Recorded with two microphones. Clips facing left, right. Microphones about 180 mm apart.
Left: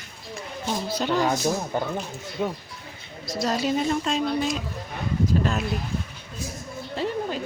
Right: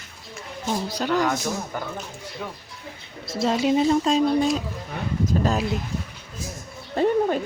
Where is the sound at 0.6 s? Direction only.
15° right (ahead or behind).